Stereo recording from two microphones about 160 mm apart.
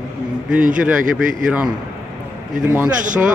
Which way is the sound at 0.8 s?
10° right (ahead or behind).